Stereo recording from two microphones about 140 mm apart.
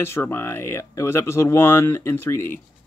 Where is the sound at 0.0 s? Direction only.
15° left (ahead or behind).